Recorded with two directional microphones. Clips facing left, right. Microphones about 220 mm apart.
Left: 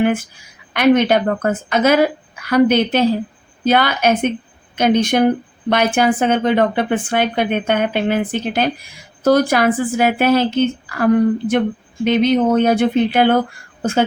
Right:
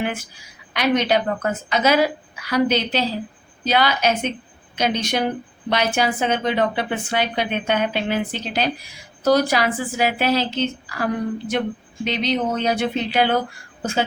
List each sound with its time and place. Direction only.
0.7 s a woman's voice: 55° left (ahead or behind)